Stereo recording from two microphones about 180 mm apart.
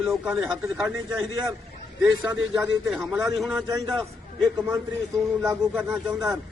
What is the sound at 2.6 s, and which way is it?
A man's voice, 5° right (ahead or behind).